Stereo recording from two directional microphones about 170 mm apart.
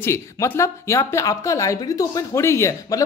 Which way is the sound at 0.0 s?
15° left (ahead or behind).